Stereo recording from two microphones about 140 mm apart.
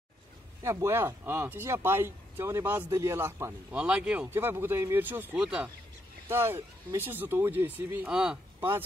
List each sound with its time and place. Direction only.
0.6 s speech: 20° right (ahead or behind)
3.7 s speech: 10° right (ahead or behind)